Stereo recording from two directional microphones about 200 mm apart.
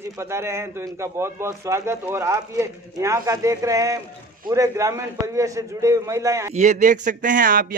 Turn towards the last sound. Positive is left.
turn(degrees=-45)  # may be behind; listen again after turning